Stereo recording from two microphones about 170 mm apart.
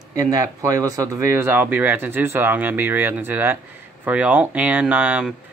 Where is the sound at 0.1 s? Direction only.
20° right (ahead or behind).